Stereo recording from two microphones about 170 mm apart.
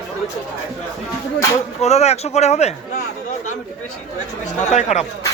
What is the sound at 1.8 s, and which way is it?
Speech, 40° left (ahead or behind).